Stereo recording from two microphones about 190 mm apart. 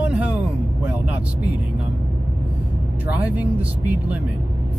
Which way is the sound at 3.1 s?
10° right (ahead or behind).